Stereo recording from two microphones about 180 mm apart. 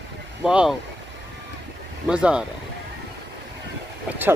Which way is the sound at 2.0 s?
5° right (ahead or behind).